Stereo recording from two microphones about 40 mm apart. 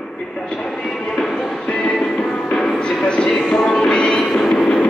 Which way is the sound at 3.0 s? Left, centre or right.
Left.